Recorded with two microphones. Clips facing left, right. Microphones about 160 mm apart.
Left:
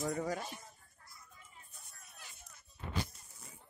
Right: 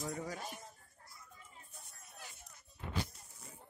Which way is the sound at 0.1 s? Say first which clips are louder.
Left 5 dB; 55° left (ahead or behind).